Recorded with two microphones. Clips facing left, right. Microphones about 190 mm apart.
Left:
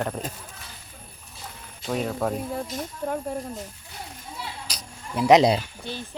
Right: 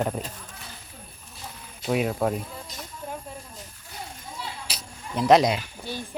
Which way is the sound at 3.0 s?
60° left (ahead or behind).